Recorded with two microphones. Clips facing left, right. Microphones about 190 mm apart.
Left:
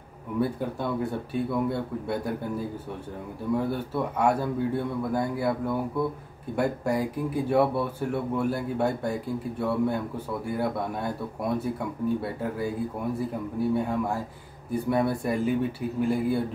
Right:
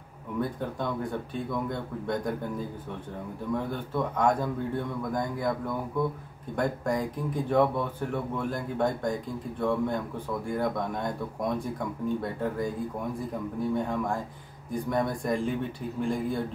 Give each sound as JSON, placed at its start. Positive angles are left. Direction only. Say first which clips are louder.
{"t": 0.4, "sound": "speech", "louder": "left 3 dB", "side_deg": 10}
{"t": 3.5, "sound": "speech", "louder": "left 3 dB", "side_deg": 10}